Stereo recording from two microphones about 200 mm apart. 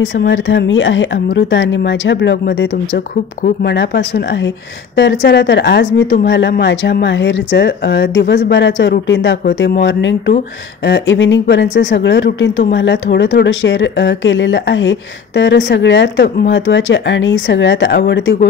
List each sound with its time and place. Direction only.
0.0 s speech: 65° left (ahead or behind)